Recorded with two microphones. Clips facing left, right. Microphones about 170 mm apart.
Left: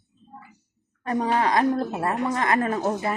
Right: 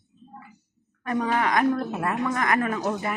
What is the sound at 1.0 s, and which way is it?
A woman's voice, 30° left (ahead or behind).